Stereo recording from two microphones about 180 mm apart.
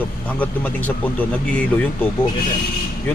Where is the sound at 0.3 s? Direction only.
10° left (ahead or behind).